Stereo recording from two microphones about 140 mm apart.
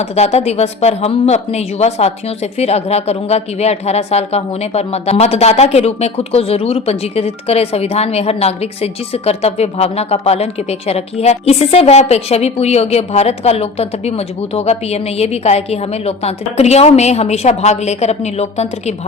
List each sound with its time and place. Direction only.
0.0 s speech: 50° left (ahead or behind)